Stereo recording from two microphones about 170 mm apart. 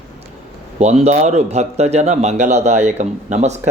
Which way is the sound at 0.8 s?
40° right (ahead or behind).